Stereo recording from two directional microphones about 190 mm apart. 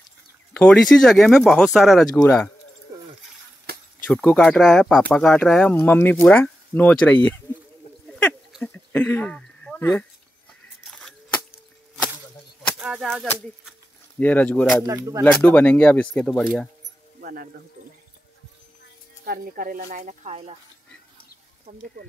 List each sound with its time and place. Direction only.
0.5 s speech: 5° left (ahead or behind)
2.9 s a sound: 15° right (ahead or behind)
3.7 s insect: 55° right (ahead or behind)
4.1 s speech: 5° left (ahead or behind)
8.1 s a sound: 5° left (ahead or behind)
10.9 s a sound: 5° left (ahead or behind)
12.7 s speech: 5° right (ahead or behind)
14.9 s speech: 15° right (ahead or behind)
15.3 s speech: 10° left (ahead or behind)
17.2 s speech: 50° right (ahead or behind)
19.2 s speech: 50° right (ahead or behind)